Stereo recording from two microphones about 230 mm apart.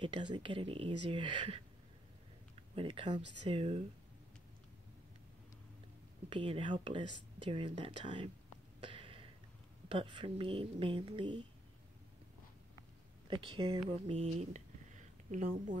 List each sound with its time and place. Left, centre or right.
0.0 s speech: right
2.7 s speech: right
6.3 s speech: right
8.8 s a sound: right
9.8 s speech: right
13.3 s speech: right